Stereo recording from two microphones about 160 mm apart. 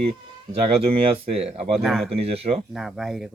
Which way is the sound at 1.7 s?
Centre (ahead or behind).